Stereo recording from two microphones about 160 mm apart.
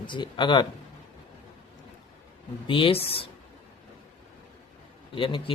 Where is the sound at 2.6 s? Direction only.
35° left (ahead or behind).